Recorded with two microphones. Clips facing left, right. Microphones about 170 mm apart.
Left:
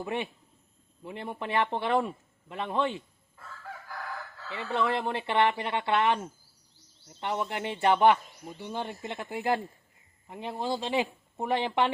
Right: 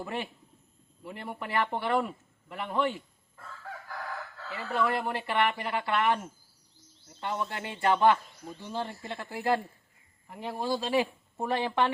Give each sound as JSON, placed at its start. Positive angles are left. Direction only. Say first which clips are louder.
{"t": 0.0, "sound": "speech", "louder": "left 3 dB", "side_deg": 20}
{"t": 4.4, "sound": "speech", "louder": "left 1 dB", "side_deg": 25}